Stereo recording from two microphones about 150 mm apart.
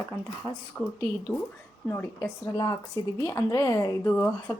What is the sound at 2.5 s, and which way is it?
A woman's voice, 25° left (ahead or behind).